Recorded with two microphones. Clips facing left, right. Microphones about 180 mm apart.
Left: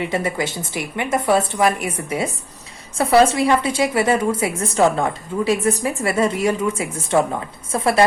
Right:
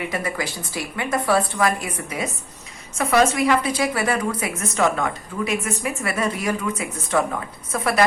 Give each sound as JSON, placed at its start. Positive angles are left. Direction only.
{"t": 0.0, "sound": "a woman's voice", "side_deg": 25}